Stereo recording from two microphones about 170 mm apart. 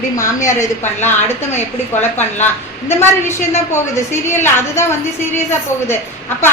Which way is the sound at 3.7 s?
15° left (ahead or behind).